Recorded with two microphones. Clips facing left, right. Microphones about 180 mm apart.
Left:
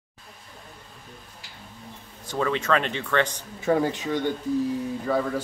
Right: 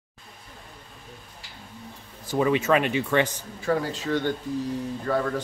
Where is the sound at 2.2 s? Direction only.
15° right (ahead or behind).